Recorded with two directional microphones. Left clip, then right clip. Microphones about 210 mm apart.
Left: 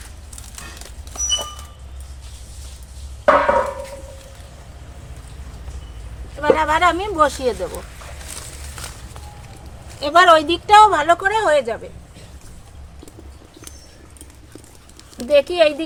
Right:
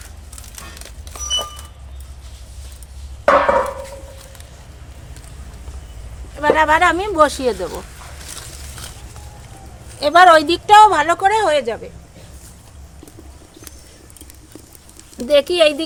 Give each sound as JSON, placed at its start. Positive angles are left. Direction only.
{"t": 3.2, "sound": "a sound", "side_deg": -50}
{"t": 6.4, "sound": "speech", "side_deg": -40}
{"t": 10.0, "sound": "speech", "side_deg": -45}
{"t": 15.3, "sound": "speech", "side_deg": -45}